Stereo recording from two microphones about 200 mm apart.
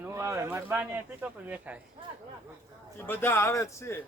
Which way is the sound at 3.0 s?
10° left (ahead or behind).